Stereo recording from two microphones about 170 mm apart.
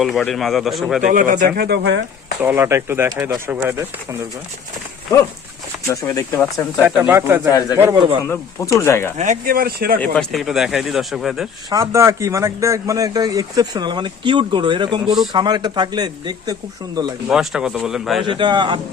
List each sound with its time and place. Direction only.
0.0 s speech: centre (ahead or behind)
1.0 s speech: 50° right (ahead or behind)
1.4 s speech: 70° right (ahead or behind); by 2.0 s 90° right
2.4 s speech: 15° right (ahead or behind)
5.9 s speech: 20° left (ahead or behind)
6.8 s speech: 10° right (ahead or behind)
8.2 s speech: 15° left (ahead or behind)
9.1 s speech: 45° right (ahead or behind); by 10.0 s 65° right (ahead or behind)
10.0 s speech: centre (ahead or behind)
11.7 s a man's voice: 20° right (ahead or behind)
17.2 s speech: 5° right (ahead or behind)
18.2 s a man's voice: 30° right (ahead or behind)